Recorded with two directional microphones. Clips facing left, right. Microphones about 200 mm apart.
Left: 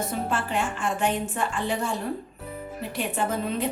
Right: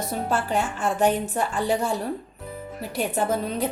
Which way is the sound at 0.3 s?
40° right (ahead or behind).